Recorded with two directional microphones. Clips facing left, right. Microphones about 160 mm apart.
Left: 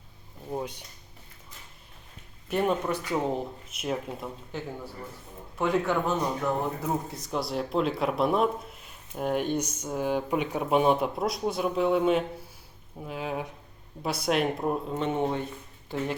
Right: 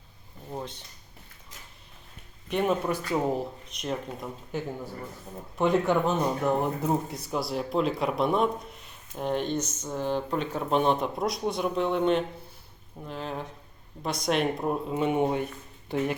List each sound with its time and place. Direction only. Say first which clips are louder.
0.5 s speech: left 3 dB; 10° left (ahead or behind)
2.5 s speech: even; 5° left (ahead or behind)
3.1 s speech: right 2 dB; 10° right (ahead or behind)
3.7 s speech: left 1 dB; 5° left (ahead or behind)
5.5 s speech: right 2 dB; 20° right (ahead or behind)
7.3 s speech: left 1 dB; centre (ahead or behind)